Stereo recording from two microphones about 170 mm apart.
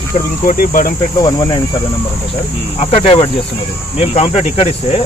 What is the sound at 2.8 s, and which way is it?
Speech, 35° left (ahead or behind).